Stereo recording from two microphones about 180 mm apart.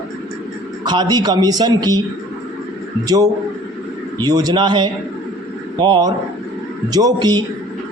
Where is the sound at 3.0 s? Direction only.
20° right (ahead or behind).